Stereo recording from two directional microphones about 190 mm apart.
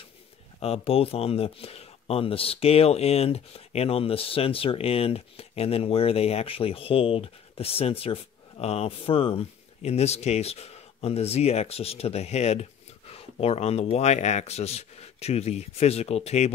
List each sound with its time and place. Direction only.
0.6 s speech: 30° left (ahead or behind)